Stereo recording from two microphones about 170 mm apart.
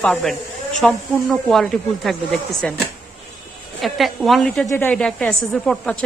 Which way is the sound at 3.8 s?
Centre (ahead or behind).